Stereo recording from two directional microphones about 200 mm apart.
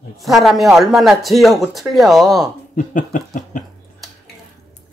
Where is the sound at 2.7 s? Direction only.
40° left (ahead or behind).